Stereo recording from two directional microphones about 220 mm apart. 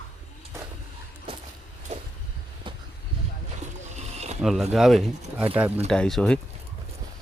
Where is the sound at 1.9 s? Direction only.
30° right (ahead or behind).